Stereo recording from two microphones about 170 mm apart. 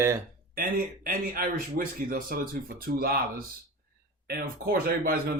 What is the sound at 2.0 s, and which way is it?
Speech, 55° right (ahead or behind).